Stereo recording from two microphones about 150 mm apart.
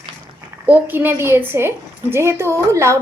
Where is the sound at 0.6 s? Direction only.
10° right (ahead or behind).